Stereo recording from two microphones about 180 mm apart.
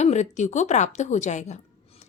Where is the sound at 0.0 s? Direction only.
40° left (ahead or behind).